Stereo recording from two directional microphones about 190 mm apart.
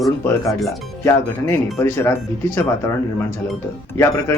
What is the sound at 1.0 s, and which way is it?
A man's voice, 15° left (ahead or behind).